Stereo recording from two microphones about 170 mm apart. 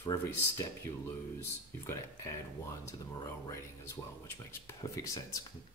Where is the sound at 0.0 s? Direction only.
15° left (ahead or behind).